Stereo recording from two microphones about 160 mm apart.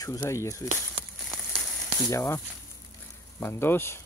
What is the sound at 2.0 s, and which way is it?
Speech, 20° left (ahead or behind).